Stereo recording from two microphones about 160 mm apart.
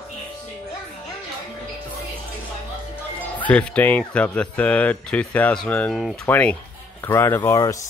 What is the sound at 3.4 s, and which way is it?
Speech, 10° left (ahead or behind).